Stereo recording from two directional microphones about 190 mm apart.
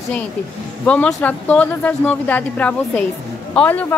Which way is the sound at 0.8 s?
5° left (ahead or behind).